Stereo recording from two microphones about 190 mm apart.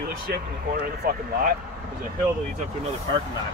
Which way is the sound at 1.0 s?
50° right (ahead or behind).